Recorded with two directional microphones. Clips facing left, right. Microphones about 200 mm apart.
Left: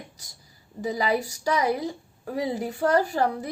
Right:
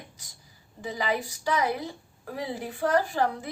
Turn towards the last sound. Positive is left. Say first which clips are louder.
# left 2 dB
turn(degrees=40)  # may be behind; listen again after turning